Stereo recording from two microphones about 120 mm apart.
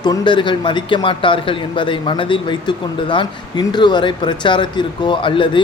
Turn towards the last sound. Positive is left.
turn(degrees=45)  # may be behind; listen again after turning